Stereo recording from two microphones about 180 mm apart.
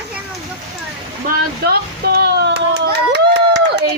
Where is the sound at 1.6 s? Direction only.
60° right (ahead or behind).